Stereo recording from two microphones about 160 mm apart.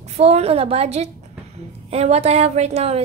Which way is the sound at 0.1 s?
40° right (ahead or behind).